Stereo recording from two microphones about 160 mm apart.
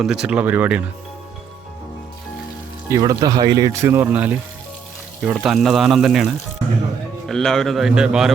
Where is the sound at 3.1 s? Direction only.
25° right (ahead or behind).